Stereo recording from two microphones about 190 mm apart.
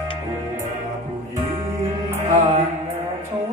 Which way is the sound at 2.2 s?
40° right (ahead or behind).